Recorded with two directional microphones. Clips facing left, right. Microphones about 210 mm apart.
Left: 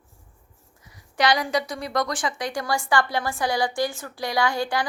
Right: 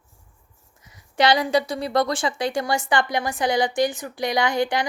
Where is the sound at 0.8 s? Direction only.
25° right (ahead or behind).